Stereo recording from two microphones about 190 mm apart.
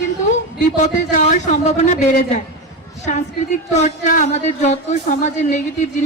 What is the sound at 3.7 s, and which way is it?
Music, 40° left (ahead or behind).